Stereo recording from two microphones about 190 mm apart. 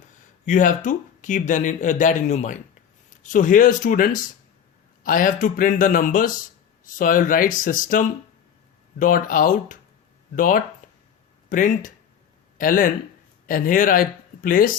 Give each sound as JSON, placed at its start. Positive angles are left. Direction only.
{"t": 0.4, "sound": "speech", "side_deg": 40}